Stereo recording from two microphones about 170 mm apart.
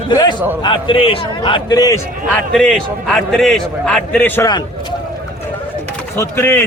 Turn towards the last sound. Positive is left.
turn(degrees=15)  # may be behind; listen again after turning